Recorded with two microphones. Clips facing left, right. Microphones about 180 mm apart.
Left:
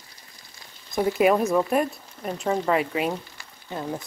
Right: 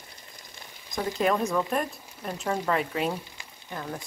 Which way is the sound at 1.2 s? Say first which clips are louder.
Left 5 dB; 10° left (ahead or behind).